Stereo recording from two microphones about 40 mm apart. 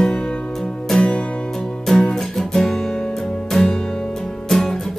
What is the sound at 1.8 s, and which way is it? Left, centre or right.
Music, centre.